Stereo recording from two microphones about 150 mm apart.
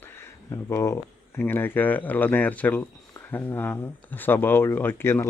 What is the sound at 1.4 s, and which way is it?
Speech, 15° left (ahead or behind).